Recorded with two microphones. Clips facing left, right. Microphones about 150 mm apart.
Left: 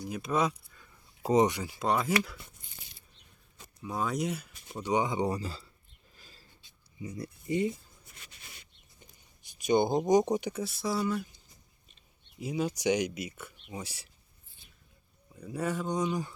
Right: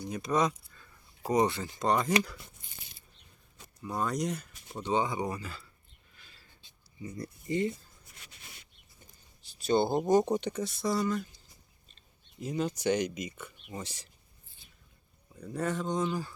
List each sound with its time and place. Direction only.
0.0 s speech: 5° left (ahead or behind)
1.2 s speech: 20° left (ahead or behind); by 2.1 s 5° left (ahead or behind)
3.8 s speech: centre (ahead or behind); by 5.2 s 15° left (ahead or behind)
5.2 s speech: 30° left (ahead or behind)
6.1 s a sound: 40° left (ahead or behind)
7.0 s speech: 15° left (ahead or behind)
9.5 s speech: 15° left (ahead or behind)
12.4 s speech: 5° left (ahead or behind)
15.4 s speech: 10° left (ahead or behind)